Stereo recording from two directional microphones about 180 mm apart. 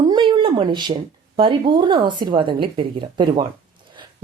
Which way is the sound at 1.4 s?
30° right (ahead or behind).